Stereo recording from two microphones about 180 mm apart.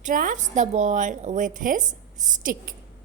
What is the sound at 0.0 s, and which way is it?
Speech, 50° right (ahead or behind).